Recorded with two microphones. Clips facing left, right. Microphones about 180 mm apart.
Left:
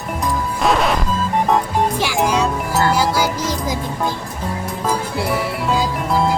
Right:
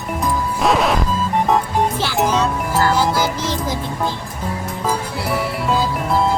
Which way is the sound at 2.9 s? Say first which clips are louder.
Even; 10° left (ahead or behind).